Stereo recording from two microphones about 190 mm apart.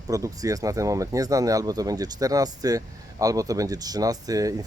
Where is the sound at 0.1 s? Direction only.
15° right (ahead or behind).